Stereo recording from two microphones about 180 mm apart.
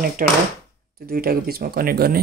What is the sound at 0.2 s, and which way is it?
Speech, 50° right (ahead or behind).